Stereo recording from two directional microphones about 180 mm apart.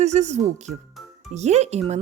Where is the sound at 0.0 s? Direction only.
40° right (ahead or behind).